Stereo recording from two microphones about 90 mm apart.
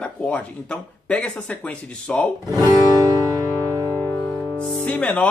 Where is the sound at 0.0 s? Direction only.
15° left (ahead or behind).